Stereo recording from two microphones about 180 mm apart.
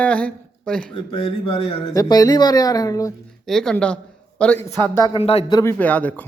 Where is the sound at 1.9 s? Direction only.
20° left (ahead or behind).